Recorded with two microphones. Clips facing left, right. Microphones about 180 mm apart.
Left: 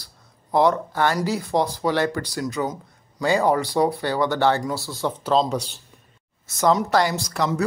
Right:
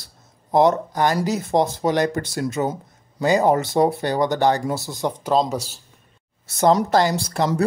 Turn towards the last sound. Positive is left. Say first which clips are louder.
# right 2 dB
turn(degrees=-30)  # may be behind; listen again after turning